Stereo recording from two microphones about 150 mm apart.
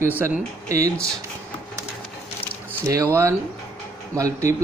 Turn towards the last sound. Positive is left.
turn(degrees=-20)  # may be behind; listen again after turning